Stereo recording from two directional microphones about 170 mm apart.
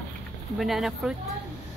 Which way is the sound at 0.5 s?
Centre (ahead or behind).